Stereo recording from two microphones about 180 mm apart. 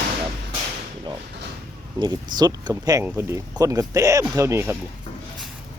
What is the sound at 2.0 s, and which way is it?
Speech, 25° right (ahead or behind).